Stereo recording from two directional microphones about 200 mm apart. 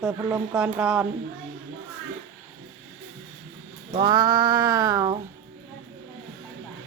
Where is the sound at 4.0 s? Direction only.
20° right (ahead or behind).